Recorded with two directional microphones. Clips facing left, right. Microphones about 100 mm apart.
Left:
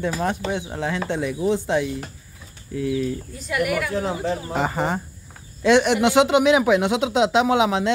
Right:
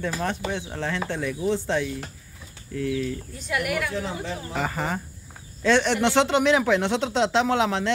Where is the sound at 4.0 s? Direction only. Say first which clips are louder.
Left 6 dB; 45° left (ahead or behind).